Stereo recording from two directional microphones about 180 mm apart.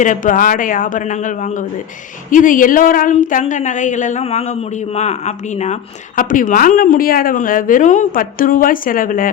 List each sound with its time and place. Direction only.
0.0 s a woman's voice: 45° left (ahead or behind)